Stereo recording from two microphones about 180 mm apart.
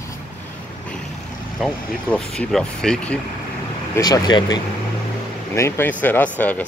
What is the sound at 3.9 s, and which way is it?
Speech, 20° left (ahead or behind).